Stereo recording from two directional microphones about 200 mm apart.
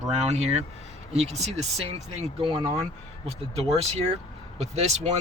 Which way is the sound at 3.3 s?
30° right (ahead or behind).